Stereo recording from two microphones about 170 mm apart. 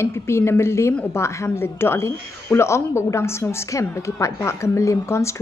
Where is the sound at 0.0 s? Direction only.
15° left (ahead or behind).